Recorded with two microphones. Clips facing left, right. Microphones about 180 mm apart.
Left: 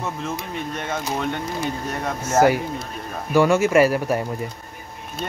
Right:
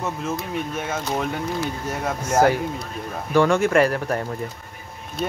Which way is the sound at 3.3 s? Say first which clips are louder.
Left 1 dB; 5° left (ahead or behind).